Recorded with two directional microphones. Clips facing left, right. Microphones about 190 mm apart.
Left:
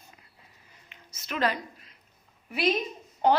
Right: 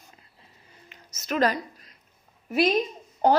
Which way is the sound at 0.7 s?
40° right (ahead or behind).